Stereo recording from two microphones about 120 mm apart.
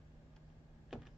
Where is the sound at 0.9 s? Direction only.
5° right (ahead or behind).